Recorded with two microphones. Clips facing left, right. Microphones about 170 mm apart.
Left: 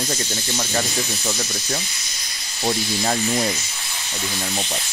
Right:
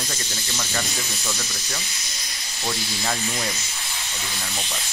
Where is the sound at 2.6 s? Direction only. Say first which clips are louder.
Left 6 dB; 35° left (ahead or behind).